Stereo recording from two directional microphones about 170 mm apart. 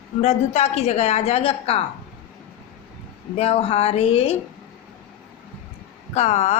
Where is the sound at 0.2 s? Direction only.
40° left (ahead or behind).